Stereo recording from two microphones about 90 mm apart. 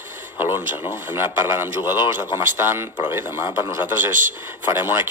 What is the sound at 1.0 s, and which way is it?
Speech, 25° right (ahead or behind).